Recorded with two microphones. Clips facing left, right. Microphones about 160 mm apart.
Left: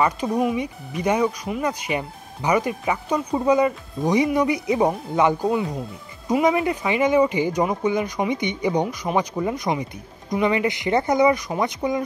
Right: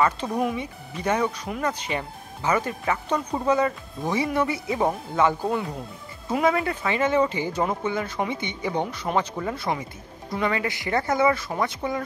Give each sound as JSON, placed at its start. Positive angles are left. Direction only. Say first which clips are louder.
{"t": 0.0, "sound": "speech", "louder": "left 2 dB", "side_deg": 10}
{"t": 5.5, "sound": "speech", "louder": "left 4 dB", "side_deg": 5}
{"t": 6.4, "sound": "speech", "louder": "left 1 dB", "side_deg": 15}